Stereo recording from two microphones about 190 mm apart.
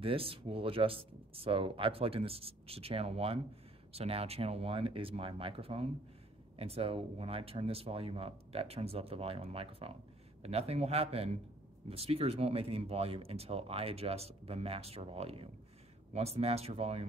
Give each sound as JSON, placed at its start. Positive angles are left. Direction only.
{"t": 0.0, "sound": "speech", "side_deg": -30}